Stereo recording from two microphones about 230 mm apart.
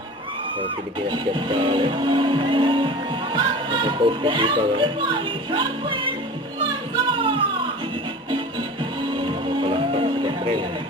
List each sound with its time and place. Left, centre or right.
1.1 s speech: right
6.9 s music: right